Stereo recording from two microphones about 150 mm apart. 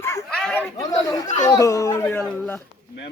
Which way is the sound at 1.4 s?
20° left (ahead or behind).